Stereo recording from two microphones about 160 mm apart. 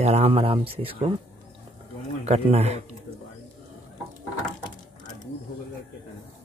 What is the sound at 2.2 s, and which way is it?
Speech, 40° right (ahead or behind).